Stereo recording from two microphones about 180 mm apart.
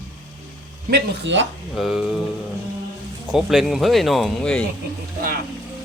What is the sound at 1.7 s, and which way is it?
Speech, centre (ahead or behind).